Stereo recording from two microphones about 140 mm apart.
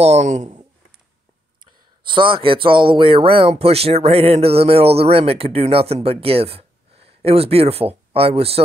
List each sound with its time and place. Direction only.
0.0 s speech: 55° right (ahead or behind)
2.0 s speech: 35° right (ahead or behind)